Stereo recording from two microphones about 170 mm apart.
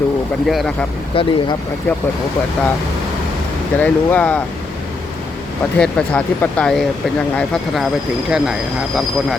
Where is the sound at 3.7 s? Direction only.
10° left (ahead or behind).